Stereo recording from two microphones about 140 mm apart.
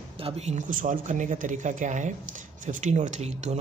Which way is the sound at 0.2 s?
45° right (ahead or behind).